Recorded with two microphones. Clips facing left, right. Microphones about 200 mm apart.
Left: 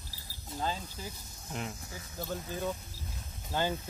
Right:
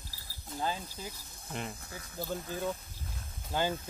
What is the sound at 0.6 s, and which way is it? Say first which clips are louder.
Speech: even; 15° right (ahead or behind).